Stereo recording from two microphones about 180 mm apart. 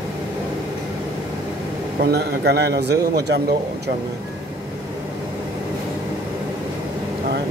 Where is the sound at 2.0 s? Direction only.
65° right (ahead or behind).